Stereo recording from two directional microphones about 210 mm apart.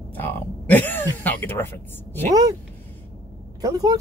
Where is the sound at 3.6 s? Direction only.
15° right (ahead or behind).